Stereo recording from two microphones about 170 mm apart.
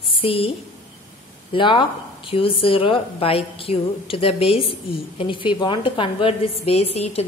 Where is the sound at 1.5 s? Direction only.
30° left (ahead or behind).